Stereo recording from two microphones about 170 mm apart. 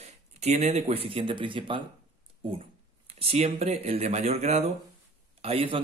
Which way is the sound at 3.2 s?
35° right (ahead or behind).